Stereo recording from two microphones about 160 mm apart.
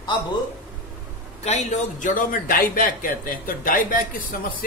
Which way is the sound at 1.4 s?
45° left (ahead or behind).